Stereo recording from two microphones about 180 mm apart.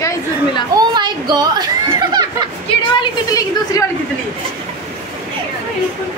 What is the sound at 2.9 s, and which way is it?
Speech, 20° left (ahead or behind).